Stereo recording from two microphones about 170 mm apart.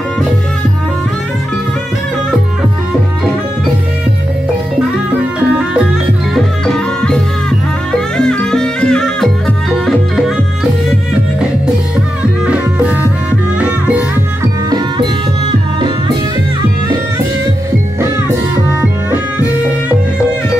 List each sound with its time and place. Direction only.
6.3 s music: 5° left (ahead or behind)
12.4 s music: 10° right (ahead or behind)
18.7 s music: 15° right (ahead or behind)